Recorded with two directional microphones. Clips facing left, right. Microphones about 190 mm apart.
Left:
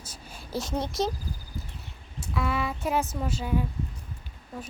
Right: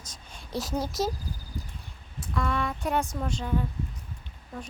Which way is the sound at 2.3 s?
5° left (ahead or behind).